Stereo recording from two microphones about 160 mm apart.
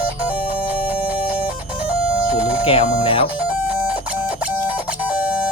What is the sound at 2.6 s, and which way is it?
Speech, 35° left (ahead or behind).